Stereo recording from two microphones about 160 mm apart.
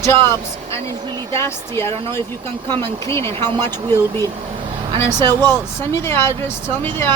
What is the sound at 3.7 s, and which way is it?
Speech, 25° right (ahead or behind).